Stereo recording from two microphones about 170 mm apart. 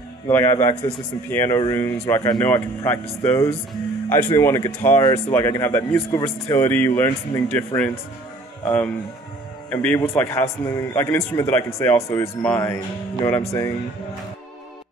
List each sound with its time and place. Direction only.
0.3 s a man's voice: 15° left (ahead or behind)
9.7 s a man's voice: 10° left (ahead or behind)